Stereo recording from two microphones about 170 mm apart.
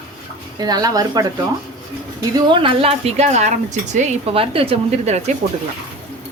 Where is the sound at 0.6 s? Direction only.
25° right (ahead or behind).